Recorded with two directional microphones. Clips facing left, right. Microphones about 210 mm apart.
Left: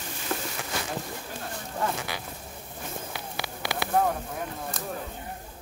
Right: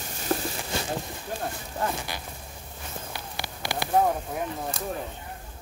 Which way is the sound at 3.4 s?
90° left.